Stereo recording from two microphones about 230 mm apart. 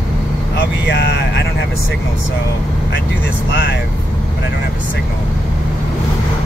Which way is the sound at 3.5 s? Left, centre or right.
Left.